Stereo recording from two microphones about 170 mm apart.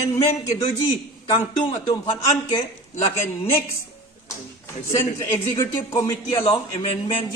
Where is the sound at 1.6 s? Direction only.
25° left (ahead or behind).